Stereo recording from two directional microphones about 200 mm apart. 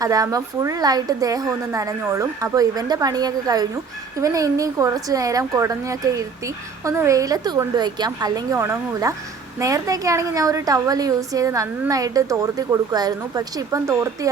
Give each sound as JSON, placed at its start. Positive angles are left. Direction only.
{"t": 0.0, "sound": "a woman's voice", "side_deg": -15}